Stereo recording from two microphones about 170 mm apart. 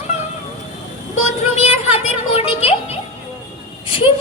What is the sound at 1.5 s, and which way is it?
Music, 40° left (ahead or behind).